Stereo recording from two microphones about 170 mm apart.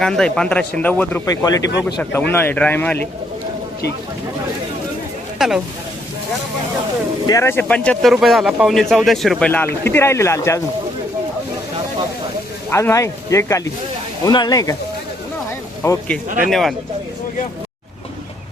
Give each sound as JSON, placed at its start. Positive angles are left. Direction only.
{"t": 0.0, "sound": "speech", "side_deg": 5}
{"t": 5.4, "sound": "speech", "side_deg": 0}
{"t": 7.3, "sound": "speech", "side_deg": 15}
{"t": 12.7, "sound": "speech", "side_deg": 15}
{"t": 15.8, "sound": "speech", "side_deg": 15}
{"t": 16.5, "sound": "speech", "side_deg": 0}